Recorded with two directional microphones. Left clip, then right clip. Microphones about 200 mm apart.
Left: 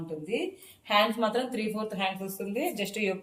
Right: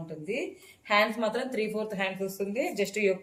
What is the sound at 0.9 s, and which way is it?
Speech, 15° right (ahead or behind).